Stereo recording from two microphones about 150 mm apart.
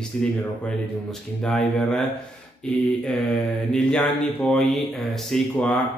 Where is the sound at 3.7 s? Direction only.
5° left (ahead or behind).